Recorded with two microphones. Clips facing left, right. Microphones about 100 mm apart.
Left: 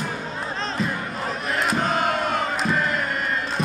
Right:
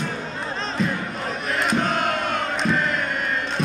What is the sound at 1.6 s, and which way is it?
Chant, centre (ahead or behind).